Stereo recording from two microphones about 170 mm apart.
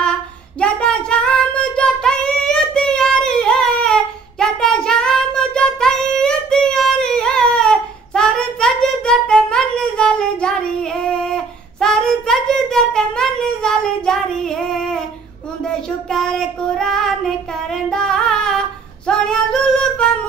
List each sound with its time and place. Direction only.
0.6 s child singing: 5° left (ahead or behind)
19.0 s female singing: 5° left (ahead or behind)